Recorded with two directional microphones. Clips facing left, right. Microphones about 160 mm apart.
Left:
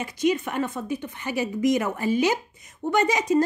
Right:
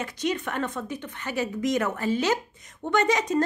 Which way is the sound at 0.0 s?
10° left (ahead or behind).